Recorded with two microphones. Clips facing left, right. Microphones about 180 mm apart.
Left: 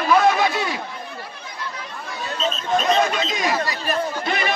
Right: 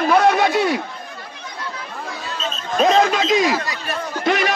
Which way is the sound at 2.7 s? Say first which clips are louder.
Right 4 dB; 90° right.